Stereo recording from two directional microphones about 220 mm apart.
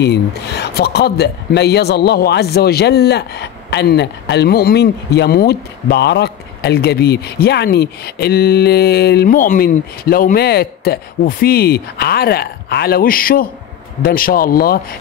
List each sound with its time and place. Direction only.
0.0 s speech: 50° left (ahead or behind)